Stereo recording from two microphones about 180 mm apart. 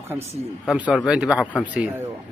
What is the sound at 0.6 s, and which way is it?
Speech, 5° right (ahead or behind).